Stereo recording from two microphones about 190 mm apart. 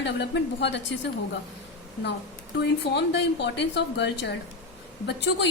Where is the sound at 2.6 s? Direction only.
65° left (ahead or behind).